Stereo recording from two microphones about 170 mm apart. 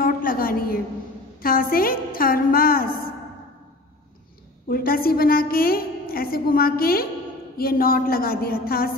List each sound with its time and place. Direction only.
0.0 s a sound: 55° left (ahead or behind)
1.4 s a woman's voice: 60° left (ahead or behind)
4.6 s a woman's voice: 60° left (ahead or behind)